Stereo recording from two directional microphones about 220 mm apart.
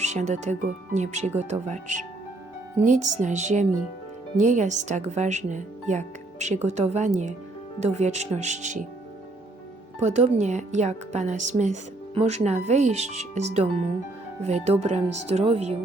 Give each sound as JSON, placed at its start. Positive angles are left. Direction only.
{"t": 0.0, "sound": "speech", "side_deg": -30}
{"t": 10.0, "sound": "speech", "side_deg": -30}